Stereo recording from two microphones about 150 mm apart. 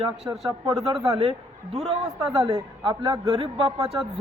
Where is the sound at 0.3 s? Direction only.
20° right (ahead or behind).